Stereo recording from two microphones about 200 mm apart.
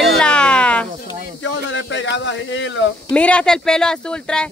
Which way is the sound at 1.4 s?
65° left (ahead or behind).